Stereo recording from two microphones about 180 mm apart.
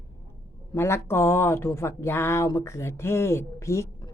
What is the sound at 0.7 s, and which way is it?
Speech, 15° left (ahead or behind).